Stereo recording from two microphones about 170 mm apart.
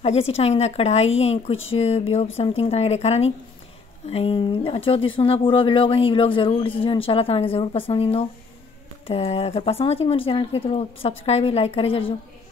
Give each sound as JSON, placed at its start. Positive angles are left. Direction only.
{"t": 0.0, "sound": "speech", "side_deg": 35}